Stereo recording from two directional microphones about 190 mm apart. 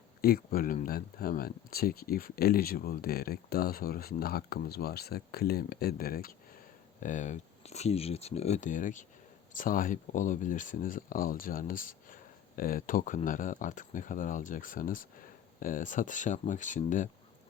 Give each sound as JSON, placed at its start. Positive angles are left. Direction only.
{"t": 0.2, "sound": "speech", "side_deg": 50}
{"t": 7.0, "sound": "speech", "side_deg": 40}